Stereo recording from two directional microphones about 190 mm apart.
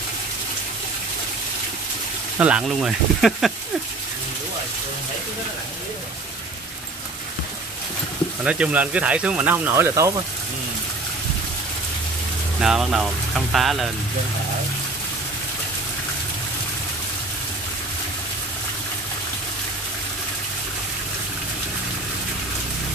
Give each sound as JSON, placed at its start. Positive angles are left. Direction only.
{"t": 2.3, "sound": "speech", "side_deg": -5}
{"t": 8.5, "sound": "speech", "side_deg": -5}
{"t": 12.6, "sound": "speech", "side_deg": -5}